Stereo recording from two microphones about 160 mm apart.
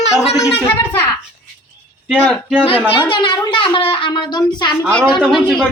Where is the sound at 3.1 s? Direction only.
30° left (ahead or behind).